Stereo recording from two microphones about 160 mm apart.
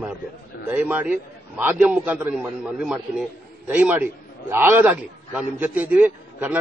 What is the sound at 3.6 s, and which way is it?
A man's voice, 10° right (ahead or behind).